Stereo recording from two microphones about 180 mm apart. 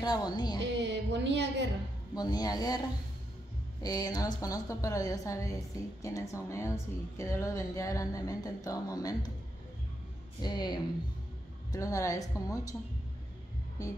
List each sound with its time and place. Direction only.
0.0 s a woman's voice: 20° left (ahead or behind)
0.6 s a sound: 85° right
2.1 s a woman's voice: 20° left (ahead or behind)
3.8 s a woman's voice: 20° left (ahead or behind)
10.4 s a woman's voice: 25° left (ahead or behind)